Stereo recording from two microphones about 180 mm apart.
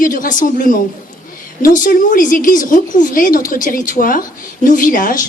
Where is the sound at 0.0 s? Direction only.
50° left (ahead or behind).